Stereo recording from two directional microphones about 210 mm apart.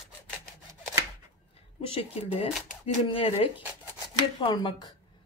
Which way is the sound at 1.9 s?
25° left (ahead or behind).